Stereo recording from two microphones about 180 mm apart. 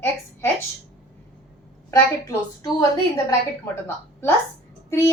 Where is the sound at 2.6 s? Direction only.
20° left (ahead or behind).